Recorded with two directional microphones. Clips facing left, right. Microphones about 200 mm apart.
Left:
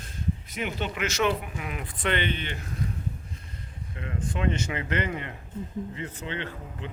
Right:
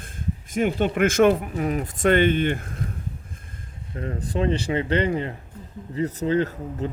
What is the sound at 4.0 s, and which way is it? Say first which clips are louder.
Speech: right 6 dB; 40° right (ahead or behind).